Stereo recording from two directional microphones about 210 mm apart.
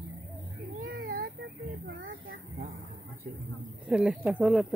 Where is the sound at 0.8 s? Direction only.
45° right (ahead or behind).